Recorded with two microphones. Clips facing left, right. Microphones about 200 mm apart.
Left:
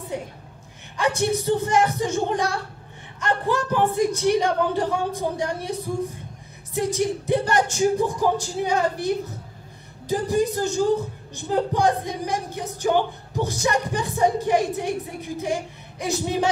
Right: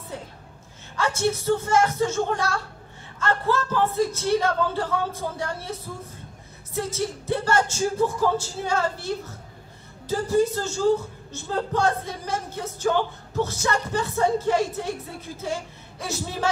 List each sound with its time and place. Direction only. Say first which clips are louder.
0.1 s speech: left 6 dB; 15° left (ahead or behind)